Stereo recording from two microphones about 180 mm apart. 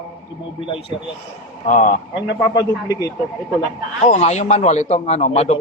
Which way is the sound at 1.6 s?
45° left (ahead or behind).